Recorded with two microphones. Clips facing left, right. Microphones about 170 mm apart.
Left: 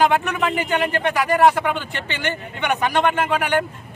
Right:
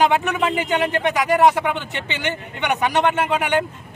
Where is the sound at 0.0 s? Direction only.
20° right (ahead or behind).